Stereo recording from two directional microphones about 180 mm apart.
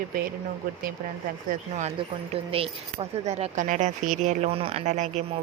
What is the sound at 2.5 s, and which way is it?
Speech, 35° right (ahead or behind).